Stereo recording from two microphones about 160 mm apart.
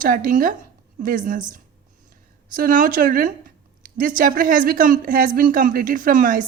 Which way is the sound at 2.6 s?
60° right (ahead or behind).